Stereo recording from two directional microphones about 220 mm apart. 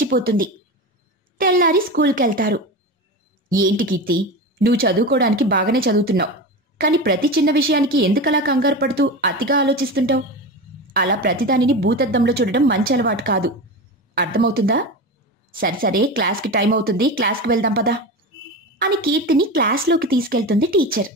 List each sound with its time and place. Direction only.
0.0 s a woman's voice: 40° right (ahead or behind)